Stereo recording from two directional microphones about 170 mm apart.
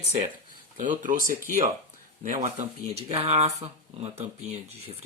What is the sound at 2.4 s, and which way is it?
Speech, 40° right (ahead or behind).